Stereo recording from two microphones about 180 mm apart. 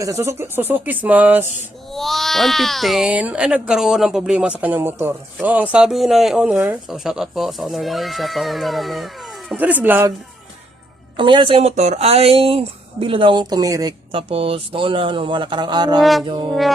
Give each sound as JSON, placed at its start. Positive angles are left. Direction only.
{"t": 0.0, "sound": "speech", "side_deg": -15}
{"t": 1.9, "sound": "speech", "side_deg": 0}
{"t": 11.2, "sound": "speech", "side_deg": -25}
{"t": 16.0, "sound": "speech", "side_deg": 0}
{"t": 16.2, "sound": "speech", "side_deg": -25}